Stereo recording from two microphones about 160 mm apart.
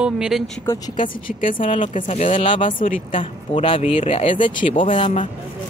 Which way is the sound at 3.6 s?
35° left (ahead or behind).